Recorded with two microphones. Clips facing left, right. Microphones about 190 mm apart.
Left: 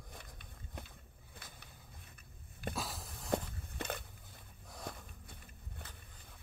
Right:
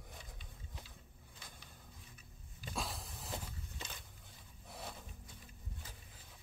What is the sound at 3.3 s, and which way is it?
Walk, 55° left (ahead or behind).